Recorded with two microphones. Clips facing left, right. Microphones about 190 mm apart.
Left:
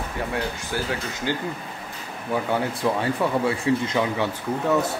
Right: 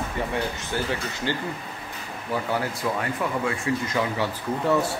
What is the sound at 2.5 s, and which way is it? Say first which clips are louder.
Speech: left 4 dB; 30° left (ahead or behind).